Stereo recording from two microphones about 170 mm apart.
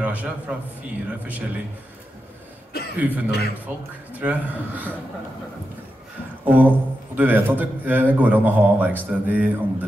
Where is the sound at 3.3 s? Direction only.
70° left (ahead or behind).